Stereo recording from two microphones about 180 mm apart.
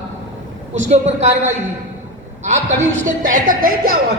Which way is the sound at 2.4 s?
40° right (ahead or behind).